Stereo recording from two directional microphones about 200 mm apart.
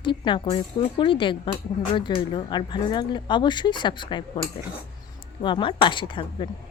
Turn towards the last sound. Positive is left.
turn(degrees=25)  # may be behind; listen again after turning